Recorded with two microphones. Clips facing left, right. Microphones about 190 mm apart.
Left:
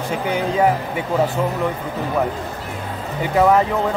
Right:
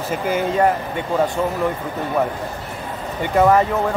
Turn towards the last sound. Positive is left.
turn(degrees=0)  # may be behind; listen again after turning